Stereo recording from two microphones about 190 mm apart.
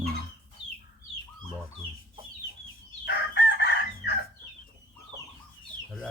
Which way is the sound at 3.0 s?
65° left (ahead or behind).